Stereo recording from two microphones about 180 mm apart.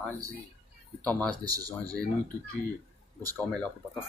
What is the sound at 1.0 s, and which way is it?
Speech, 5° left (ahead or behind).